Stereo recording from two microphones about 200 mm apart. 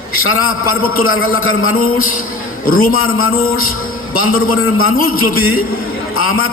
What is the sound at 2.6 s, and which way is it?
Speech, 45° left (ahead or behind).